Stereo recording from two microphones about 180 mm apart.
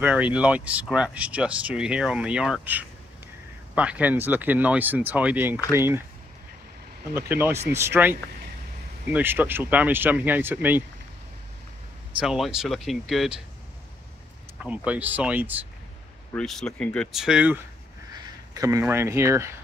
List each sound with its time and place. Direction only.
0.0 s speech: 5° right (ahead or behind)
7.2 s speech: 10° right (ahead or behind)
12.2 s speech: 5° right (ahead or behind)
14.6 s speech: 10° right (ahead or behind)
16.3 s speech: 5° left (ahead or behind)
18.5 s speech: 20° right (ahead or behind)